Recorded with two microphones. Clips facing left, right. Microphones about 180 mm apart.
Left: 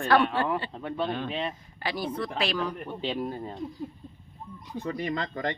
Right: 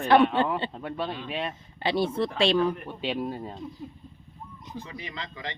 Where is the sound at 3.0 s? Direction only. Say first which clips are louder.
Right 1 dB; 10° right (ahead or behind).